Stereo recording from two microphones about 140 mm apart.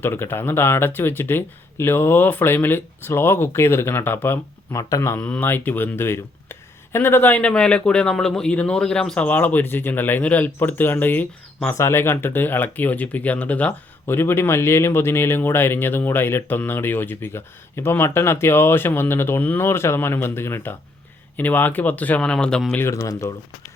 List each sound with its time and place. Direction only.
0.0 s speech: 15° left (ahead or behind)
22.8 s speech: 20° left (ahead or behind)